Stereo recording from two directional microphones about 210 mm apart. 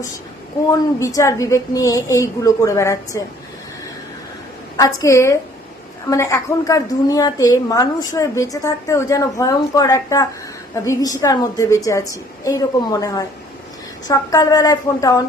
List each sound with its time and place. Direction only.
0.7 s a woman's voice: 15° left (ahead or behind)
4.8 s a woman's voice: 15° left (ahead or behind)